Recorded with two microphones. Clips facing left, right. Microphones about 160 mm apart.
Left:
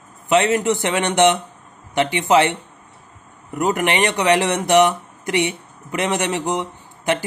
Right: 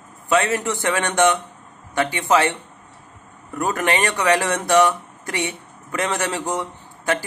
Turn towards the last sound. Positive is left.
turn(degrees=20)  # may be behind; listen again after turning